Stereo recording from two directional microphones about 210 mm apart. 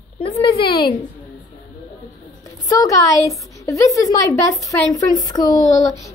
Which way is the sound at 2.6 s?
15° left (ahead or behind).